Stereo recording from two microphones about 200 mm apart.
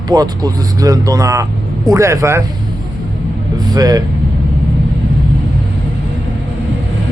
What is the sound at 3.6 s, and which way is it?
Speech, 20° right (ahead or behind).